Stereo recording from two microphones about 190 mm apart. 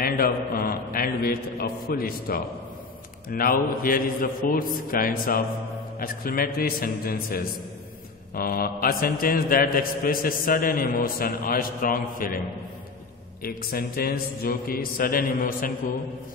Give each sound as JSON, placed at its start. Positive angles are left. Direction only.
{"t": 0.0, "sound": "mantra", "side_deg": 50}
{"t": 13.4, "sound": "mantra", "side_deg": 50}